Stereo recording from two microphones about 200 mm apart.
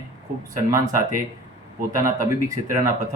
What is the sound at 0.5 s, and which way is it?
Speech, 15° right (ahead or behind).